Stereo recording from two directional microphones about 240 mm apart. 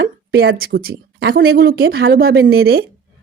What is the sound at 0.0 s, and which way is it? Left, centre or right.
Speech, right.